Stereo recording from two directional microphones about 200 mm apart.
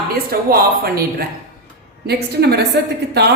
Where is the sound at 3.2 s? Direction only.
55° right (ahead or behind).